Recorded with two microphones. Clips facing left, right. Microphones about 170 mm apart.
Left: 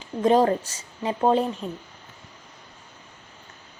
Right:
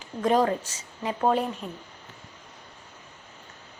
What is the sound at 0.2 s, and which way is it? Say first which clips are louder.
Speech: left 4 dB; 25° left (ahead or behind).